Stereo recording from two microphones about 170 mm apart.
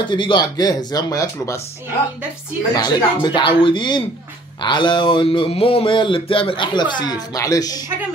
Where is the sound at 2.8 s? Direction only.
25° left (ahead or behind).